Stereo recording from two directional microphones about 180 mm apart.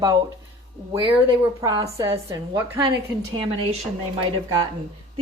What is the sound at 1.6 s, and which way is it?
A woman's voice, 20° right (ahead or behind).